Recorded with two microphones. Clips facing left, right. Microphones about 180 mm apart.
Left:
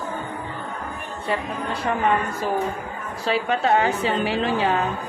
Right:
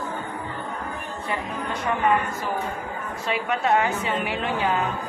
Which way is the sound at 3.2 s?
30° left (ahead or behind).